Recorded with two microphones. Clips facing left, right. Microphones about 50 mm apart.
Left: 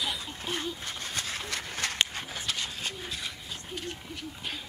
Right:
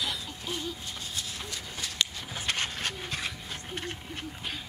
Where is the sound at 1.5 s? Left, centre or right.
Left.